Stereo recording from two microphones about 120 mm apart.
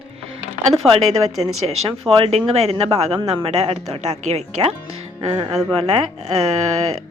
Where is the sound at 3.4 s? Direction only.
60° right (ahead or behind).